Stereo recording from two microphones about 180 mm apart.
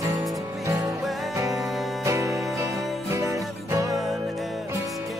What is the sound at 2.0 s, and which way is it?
Music, 15° right (ahead or behind).